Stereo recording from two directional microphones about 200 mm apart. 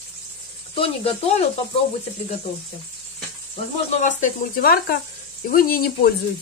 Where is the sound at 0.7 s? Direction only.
30° left (ahead or behind).